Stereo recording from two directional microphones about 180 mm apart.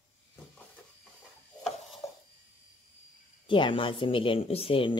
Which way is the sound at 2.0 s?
15° left (ahead or behind).